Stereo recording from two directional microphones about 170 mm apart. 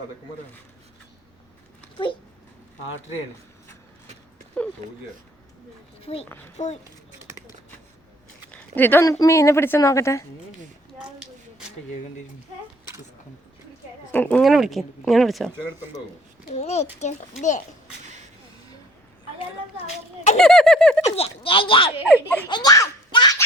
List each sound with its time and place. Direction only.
4.6 s speech: 5° left (ahead or behind)
6.0 s speech: 35° left (ahead or behind)
8.4 s speech: 10° left (ahead or behind)
14.1 s speech: 10° left (ahead or behind)
14.4 s speech: centre (ahead or behind)
16.6 s speech: 40° left (ahead or behind)
20.3 s speech: 5° left (ahead or behind)
21.0 s speech: 35° left (ahead or behind)
22.4 s a sound: 25° left (ahead or behind)